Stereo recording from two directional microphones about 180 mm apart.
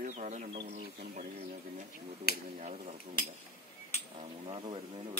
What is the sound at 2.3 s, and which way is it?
Speech, 60° left (ahead or behind).